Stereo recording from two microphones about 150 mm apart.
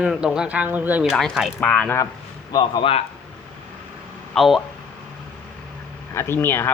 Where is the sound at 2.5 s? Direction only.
40° left (ahead or behind).